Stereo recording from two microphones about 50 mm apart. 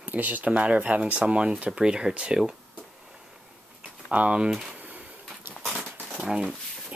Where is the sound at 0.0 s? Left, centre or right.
Right.